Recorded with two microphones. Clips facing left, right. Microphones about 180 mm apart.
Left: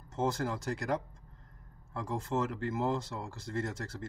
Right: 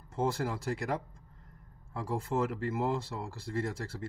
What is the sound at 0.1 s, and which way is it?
Speech, centre (ahead or behind).